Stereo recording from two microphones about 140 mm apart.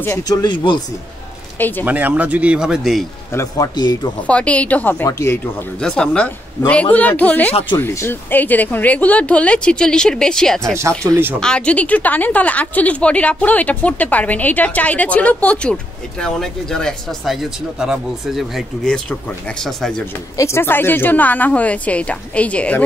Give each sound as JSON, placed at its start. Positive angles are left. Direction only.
{"t": 0.3, "sound": "a man's voice", "side_deg": 30}
{"t": 1.9, "sound": "speech", "side_deg": -10}
{"t": 3.3, "sound": "a man's voice", "side_deg": 25}
{"t": 4.3, "sound": "speech", "side_deg": 10}
{"t": 5.8, "sound": "speech", "side_deg": 5}
{"t": 11.1, "sound": "speech", "side_deg": -15}
{"t": 11.3, "sound": "speech", "side_deg": 5}
{"t": 20.3, "sound": "speech", "side_deg": 20}